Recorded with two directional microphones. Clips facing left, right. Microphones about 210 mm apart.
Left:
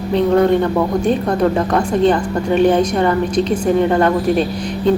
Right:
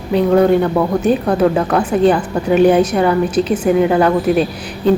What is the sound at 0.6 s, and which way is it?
A woman's voice, 5° right (ahead or behind).